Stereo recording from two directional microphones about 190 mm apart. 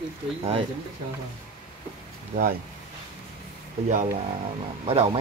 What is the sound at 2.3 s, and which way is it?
Speech, 40° right (ahead or behind).